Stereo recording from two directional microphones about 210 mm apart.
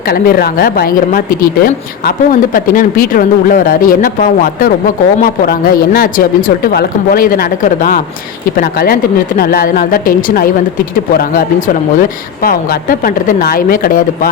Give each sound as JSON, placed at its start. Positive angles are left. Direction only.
{"t": 0.1, "sound": "speech", "side_deg": 45}